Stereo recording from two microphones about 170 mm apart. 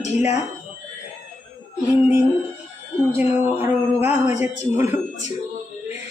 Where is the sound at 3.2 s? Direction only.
10° right (ahead or behind).